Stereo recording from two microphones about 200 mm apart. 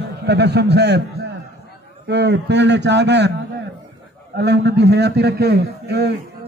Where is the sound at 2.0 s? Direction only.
60° right (ahead or behind).